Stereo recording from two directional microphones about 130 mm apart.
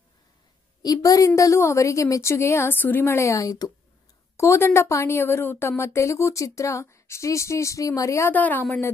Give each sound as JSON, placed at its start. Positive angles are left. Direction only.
{"t": 0.8, "sound": "a woman's voice", "side_deg": 25}